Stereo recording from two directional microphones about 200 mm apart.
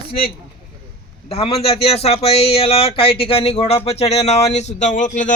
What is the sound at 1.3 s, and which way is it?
Speech, 30° left (ahead or behind).